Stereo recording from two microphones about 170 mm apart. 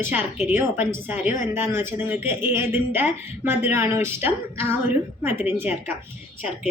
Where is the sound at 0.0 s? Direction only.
10° right (ahead or behind).